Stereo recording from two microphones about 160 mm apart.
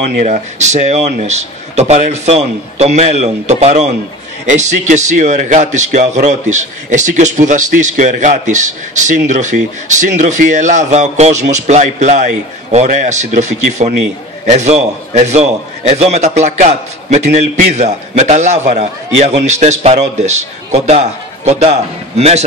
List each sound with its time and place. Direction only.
0.2 s a man's voice: 45° right (ahead or behind)